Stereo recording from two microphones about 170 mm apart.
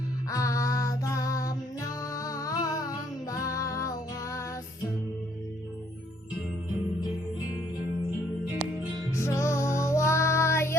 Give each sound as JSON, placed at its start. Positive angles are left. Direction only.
{"t": 0.3, "sound": "music", "side_deg": 20}
{"t": 9.1, "sound": "music", "side_deg": 15}